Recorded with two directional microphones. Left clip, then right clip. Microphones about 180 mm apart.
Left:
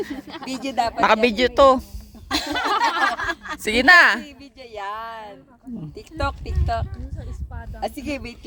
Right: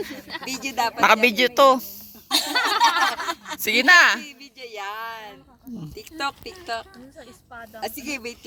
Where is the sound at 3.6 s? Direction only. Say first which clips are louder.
Left 2 dB; 25° left (ahead or behind).